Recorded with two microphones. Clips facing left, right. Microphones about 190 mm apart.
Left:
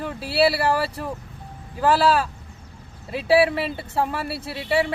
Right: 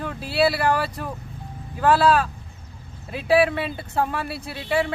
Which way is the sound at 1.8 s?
Centre (ahead or behind).